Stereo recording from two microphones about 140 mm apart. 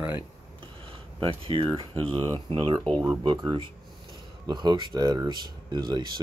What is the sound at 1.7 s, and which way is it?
Speech, 40° right (ahead or behind).